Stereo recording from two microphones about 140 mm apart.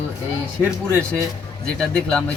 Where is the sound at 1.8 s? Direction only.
5° left (ahead or behind).